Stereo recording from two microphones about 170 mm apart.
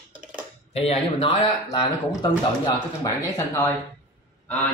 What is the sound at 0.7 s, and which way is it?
Speech, 35° left (ahead or behind).